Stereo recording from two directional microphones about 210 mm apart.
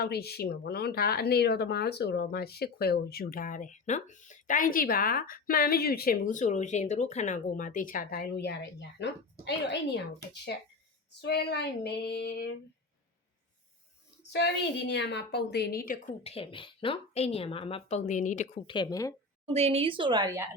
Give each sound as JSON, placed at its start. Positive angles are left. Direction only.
{"t": 0.0, "sound": "speech", "side_deg": 50}
{"t": 11.2, "sound": "speech", "side_deg": 55}
{"t": 14.3, "sound": "speech", "side_deg": 55}
{"t": 16.2, "sound": "speech", "side_deg": 25}
{"t": 19.5, "sound": "speech", "side_deg": -30}